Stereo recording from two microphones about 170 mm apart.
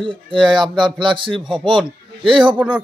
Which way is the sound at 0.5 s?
25° right (ahead or behind).